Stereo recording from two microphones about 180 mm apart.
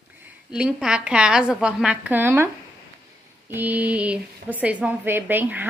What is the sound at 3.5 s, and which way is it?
A woman's voice, 10° right (ahead or behind).